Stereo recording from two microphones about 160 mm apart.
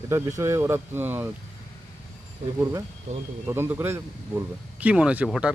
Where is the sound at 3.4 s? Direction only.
15° right (ahead or behind).